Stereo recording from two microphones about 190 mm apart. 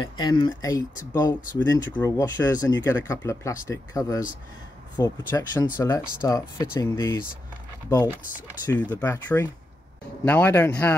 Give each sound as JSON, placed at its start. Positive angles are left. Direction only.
{"t": 0.0, "sound": "speech", "side_deg": 25}
{"t": 8.6, "sound": "speech", "side_deg": 10}